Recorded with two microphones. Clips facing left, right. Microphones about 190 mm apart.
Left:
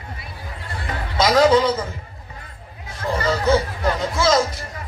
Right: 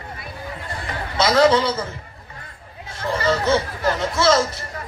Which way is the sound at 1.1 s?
10° left (ahead or behind).